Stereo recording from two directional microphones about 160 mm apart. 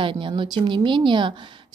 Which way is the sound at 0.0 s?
30° right (ahead or behind).